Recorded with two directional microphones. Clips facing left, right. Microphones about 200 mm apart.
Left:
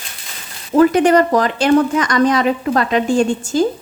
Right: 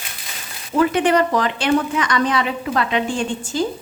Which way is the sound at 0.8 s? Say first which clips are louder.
Left 5 dB; 40° left (ahead or behind).